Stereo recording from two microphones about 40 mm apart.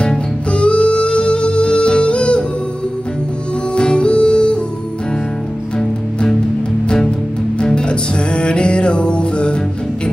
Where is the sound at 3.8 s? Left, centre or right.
Left.